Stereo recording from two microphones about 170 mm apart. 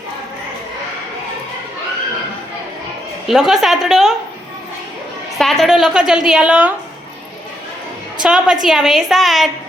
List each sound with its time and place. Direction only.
3.2 s a woman's voice: 5° right (ahead or behind)
5.4 s a woman's voice: centre (ahead or behind)
8.2 s a woman's voice: 5° right (ahead or behind)